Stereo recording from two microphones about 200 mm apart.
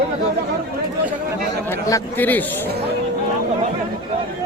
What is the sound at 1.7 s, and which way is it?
Speech, 10° left (ahead or behind).